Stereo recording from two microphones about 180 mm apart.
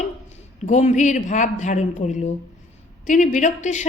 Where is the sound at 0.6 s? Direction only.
40° left (ahead or behind).